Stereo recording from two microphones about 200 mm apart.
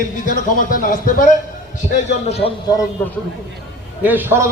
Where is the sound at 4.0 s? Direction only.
10° right (ahead or behind).